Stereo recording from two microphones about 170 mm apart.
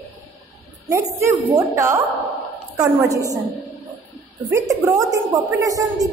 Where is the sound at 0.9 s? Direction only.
15° right (ahead or behind).